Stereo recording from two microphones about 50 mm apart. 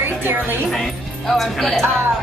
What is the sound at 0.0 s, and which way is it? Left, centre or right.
Music, right.